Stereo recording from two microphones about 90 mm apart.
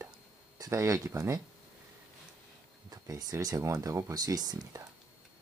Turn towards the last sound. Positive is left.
turn(degrees=-50)  # may be behind; listen again after turning